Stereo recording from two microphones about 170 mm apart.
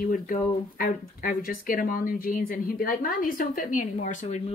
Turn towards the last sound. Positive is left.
turn(degrees=40)  # may be behind; listen again after turning